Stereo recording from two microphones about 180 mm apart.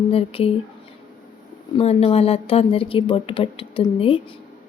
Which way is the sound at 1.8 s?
35° left (ahead or behind).